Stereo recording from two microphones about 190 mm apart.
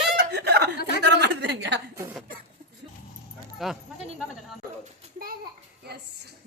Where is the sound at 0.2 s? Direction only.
60° right (ahead or behind).